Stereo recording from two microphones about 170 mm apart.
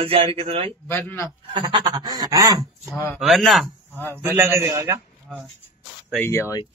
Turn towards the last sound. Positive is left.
turn(degrees=15)  # may be behind; listen again after turning